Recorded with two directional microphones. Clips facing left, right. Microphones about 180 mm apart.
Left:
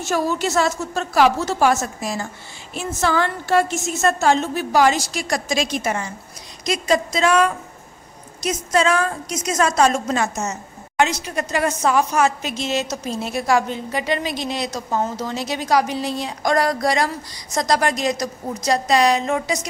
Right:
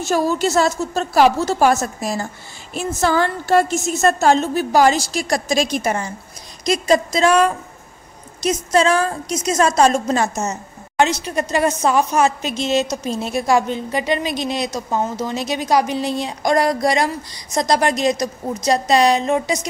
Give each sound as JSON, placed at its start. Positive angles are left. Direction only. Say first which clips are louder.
{"t": 0.0, "sound": "a woman's voice", "louder": "right 3 dB", "side_deg": -35}